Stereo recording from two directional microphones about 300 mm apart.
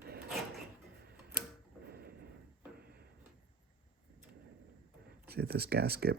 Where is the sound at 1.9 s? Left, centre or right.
Right.